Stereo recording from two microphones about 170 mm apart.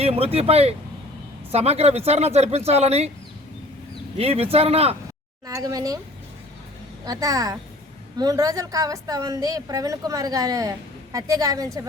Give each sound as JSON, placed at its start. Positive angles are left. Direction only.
{"t": 0.0, "sound": "speech", "side_deg": -35}
{"t": 4.2, "sound": "speech", "side_deg": -35}
{"t": 5.5, "sound": "a woman's voice", "side_deg": -20}
{"t": 7.0, "sound": "a woman's voice", "side_deg": -20}